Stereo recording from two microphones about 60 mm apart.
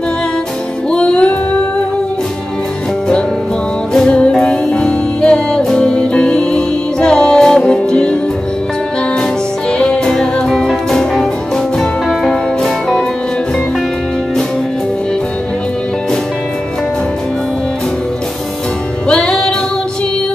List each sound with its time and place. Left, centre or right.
0.9 s music: centre
3.9 s music: centre
9.7 s music: centre
10.1 s music: centre
19.0 s music: centre